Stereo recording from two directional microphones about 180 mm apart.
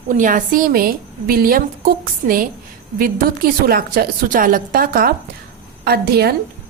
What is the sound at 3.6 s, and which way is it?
A woman's voice, 55° right (ahead or behind).